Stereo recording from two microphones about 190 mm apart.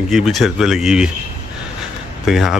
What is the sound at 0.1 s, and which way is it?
Speech, centre (ahead or behind).